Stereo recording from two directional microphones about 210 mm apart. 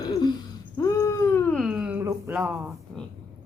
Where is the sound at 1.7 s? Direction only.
5° right (ahead or behind).